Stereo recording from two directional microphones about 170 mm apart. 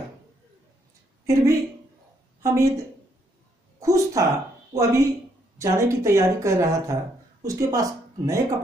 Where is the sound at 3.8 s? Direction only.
20° right (ahead or behind).